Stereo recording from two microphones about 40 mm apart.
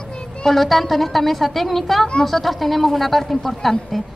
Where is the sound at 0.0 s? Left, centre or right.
Centre.